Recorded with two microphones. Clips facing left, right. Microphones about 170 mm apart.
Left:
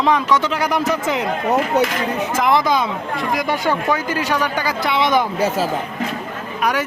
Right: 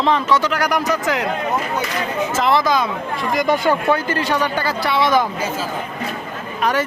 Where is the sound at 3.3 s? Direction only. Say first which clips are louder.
Right 3 dB; 5° left (ahead or behind); by 5.3 s 20° left (ahead or behind).